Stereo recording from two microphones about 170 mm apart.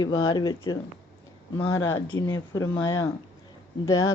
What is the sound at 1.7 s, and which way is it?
Speech, 20° left (ahead or behind).